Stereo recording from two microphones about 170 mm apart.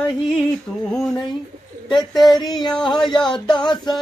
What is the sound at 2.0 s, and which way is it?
Speech, centre (ahead or behind).